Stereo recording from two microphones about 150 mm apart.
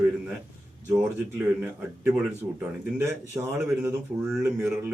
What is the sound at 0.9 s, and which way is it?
Speech, 10° right (ahead or behind).